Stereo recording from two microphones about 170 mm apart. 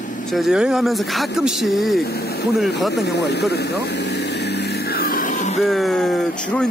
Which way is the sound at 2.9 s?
80° left.